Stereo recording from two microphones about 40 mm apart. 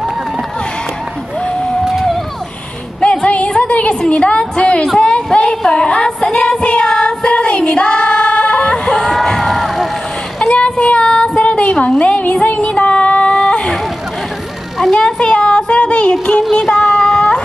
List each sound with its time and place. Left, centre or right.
1.4 s boat: centre
3.0 s music: left
4.0 s a woman's voice: left
5.0 s a sound: left
6.2 s child singing: centre
8.8 s music: centre
9.1 s crowd: centre
10.4 s a sound: left
15.0 s music: left
16.7 s a sound: left